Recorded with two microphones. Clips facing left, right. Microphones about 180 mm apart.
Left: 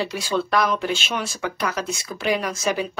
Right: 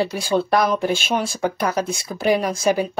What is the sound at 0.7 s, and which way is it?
Speech, 50° right (ahead or behind).